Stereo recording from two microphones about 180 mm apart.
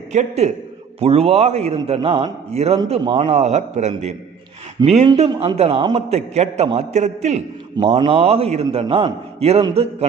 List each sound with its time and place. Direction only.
0.1 s a man's voice: 40° right (ahead or behind)
4.8 s speech: 25° right (ahead or behind)
6.1 s a man's voice: 40° right (ahead or behind)
7.8 s a man's voice: 30° right (ahead or behind)